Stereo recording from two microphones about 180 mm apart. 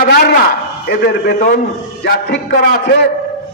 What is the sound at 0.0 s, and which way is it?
A man's voice, 60° left (ahead or behind).